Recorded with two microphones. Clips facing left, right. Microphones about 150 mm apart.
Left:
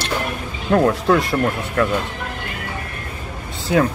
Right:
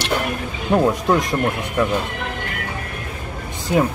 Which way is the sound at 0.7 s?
15° right (ahead or behind).